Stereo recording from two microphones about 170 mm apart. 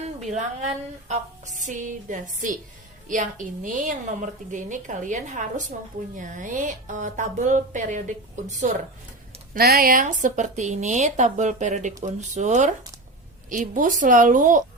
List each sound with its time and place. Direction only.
0.2 s a woman's voice: 45° right (ahead or behind)
9.6 s a woman's voice: 60° right (ahead or behind)